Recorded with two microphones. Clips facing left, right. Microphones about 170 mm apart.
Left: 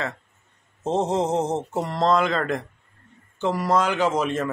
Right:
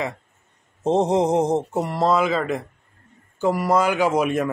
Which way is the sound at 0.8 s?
15° right (ahead or behind).